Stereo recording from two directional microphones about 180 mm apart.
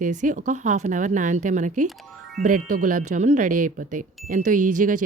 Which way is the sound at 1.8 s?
Centre (ahead or behind).